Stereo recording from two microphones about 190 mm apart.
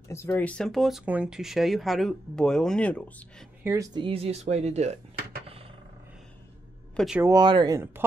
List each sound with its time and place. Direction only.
0.1 s speech: 15° left (ahead or behind)
3.6 s speech: 15° right (ahead or behind); by 4.9 s 35° right (ahead or behind)
7.2 s speech: 20° right (ahead or behind)